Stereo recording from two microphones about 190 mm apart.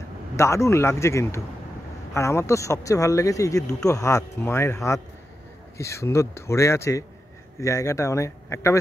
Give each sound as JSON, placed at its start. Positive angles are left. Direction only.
{"t": 0.4, "sound": "speech", "side_deg": 15}